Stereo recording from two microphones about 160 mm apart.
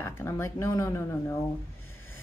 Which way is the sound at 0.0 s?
15° left (ahead or behind).